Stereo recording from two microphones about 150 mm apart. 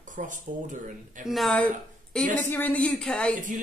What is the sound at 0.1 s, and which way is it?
Speech, 55° right (ahead or behind).